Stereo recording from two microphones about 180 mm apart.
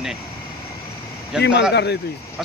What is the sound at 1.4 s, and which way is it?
Speech, 75° left (ahead or behind).